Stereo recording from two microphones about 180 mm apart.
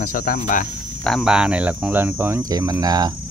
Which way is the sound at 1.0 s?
Centre (ahead or behind).